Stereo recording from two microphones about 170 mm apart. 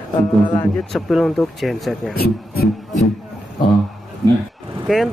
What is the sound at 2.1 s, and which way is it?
Speech, 65° left (ahead or behind).